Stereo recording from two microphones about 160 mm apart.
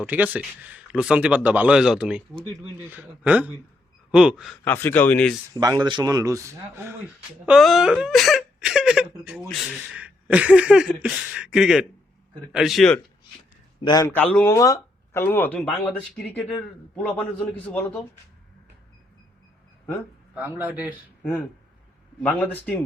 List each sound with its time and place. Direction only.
0.0 s speech: 10° right (ahead or behind)
4.6 s speech: 15° left (ahead or behind)
5.5 s speech: 25° right (ahead or behind)
7.4 s speech: centre (ahead or behind)
13.8 s a man's voice: 25° left (ahead or behind)
14.1 s speech: 10° left (ahead or behind)
20.3 s speech: 10° right (ahead or behind)
22.2 s speech: 10° left (ahead or behind)